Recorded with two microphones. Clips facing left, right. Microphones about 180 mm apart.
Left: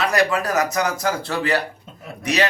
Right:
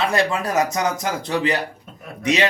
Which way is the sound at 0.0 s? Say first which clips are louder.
Left 1 dB; 25° right (ahead or behind).